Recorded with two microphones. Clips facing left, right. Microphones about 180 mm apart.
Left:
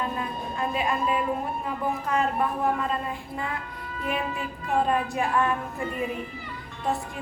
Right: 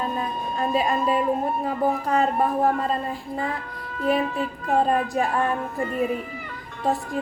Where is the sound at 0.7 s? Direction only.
35° right (ahead or behind).